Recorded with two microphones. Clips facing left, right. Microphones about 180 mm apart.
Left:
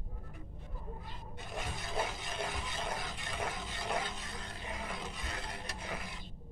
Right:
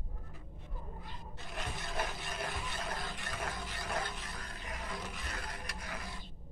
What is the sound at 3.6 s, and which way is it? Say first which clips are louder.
Roar: left 2 dB; 25° left (ahead or behind).